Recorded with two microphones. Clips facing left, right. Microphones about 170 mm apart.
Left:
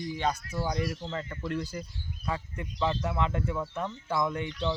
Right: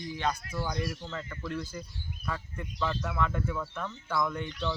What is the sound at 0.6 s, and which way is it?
Speech, 30° left (ahead or behind).